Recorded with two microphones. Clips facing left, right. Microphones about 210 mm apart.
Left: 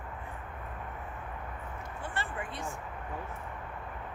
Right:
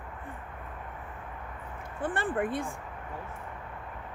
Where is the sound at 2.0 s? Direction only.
55° right (ahead or behind).